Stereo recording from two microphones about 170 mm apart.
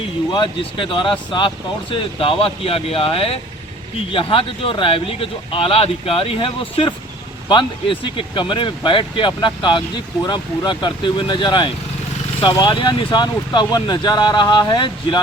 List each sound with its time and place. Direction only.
0.3 s speech: 30° left (ahead or behind)